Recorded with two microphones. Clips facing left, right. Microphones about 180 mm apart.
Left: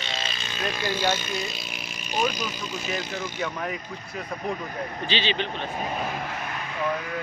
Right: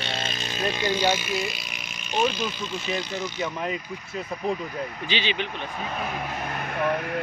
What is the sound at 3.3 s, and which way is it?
Speech, 15° right (ahead or behind).